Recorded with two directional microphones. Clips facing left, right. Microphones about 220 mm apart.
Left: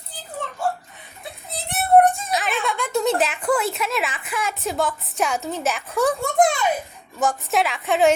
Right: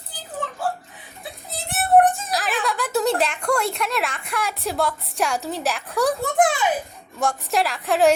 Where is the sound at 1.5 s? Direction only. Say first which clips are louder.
Left 1 dB; centre (ahead or behind).